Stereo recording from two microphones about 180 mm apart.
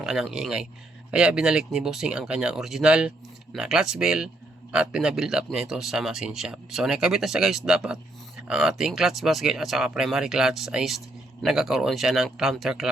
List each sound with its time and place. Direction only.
0.0 s speech: centre (ahead or behind)